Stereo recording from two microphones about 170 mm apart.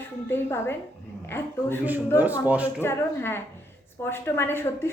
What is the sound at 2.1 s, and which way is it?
Speech, 10° right (ahead or behind).